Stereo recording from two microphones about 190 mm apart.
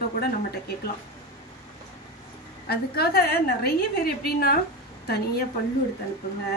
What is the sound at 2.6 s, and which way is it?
A woman's voice, 55° left (ahead or behind).